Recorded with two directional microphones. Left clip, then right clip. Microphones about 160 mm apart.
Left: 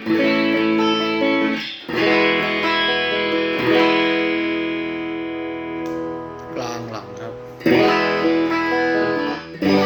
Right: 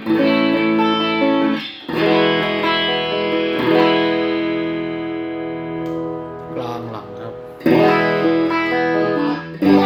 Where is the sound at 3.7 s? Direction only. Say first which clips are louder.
Right 1 dB; 10° right (ahead or behind).